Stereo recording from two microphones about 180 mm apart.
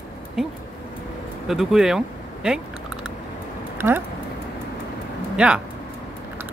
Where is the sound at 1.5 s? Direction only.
Centre (ahead or behind).